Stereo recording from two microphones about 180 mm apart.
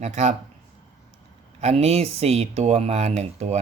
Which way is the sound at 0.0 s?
40° right (ahead or behind).